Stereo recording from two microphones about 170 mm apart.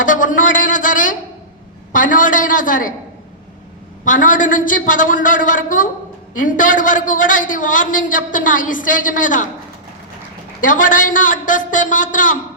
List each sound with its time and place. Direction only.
0.0 s a sound: 50° left (ahead or behind)
1.9 s a man's voice: 50° left (ahead or behind)
4.0 s a man's voice: 50° left (ahead or behind)
10.6 s a man's voice: 50° left (ahead or behind)